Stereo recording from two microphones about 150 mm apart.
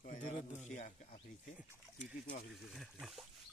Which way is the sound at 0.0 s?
55° left (ahead or behind).